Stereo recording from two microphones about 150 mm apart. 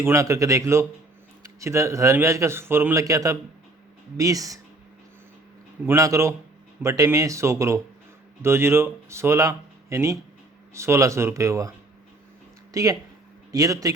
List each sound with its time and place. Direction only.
0.0 s a man's voice: 20° right (ahead or behind)
5.8 s a man's voice: 20° right (ahead or behind)
12.7 s a man's voice: 25° right (ahead or behind)